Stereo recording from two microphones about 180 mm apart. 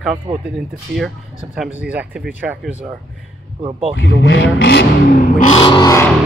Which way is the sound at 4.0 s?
90° left.